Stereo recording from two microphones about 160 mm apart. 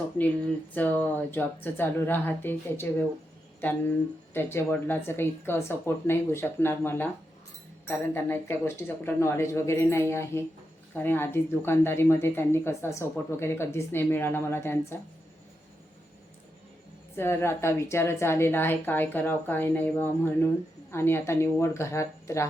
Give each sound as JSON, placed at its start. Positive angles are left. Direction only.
{"t": 0.2, "sound": "speech", "side_deg": 10}
{"t": 4.4, "sound": "speech", "side_deg": 15}
{"t": 17.2, "sound": "speech", "side_deg": 15}